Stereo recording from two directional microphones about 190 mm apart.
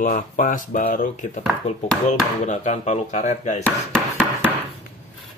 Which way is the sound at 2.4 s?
35° left (ahead or behind).